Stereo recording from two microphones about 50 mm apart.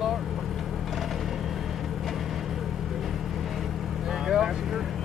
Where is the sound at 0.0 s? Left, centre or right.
Centre.